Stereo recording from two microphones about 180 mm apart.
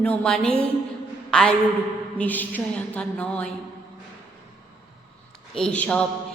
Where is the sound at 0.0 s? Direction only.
5° left (ahead or behind).